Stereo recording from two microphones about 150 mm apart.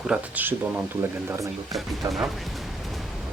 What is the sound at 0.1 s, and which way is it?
Speech, 10° right (ahead or behind).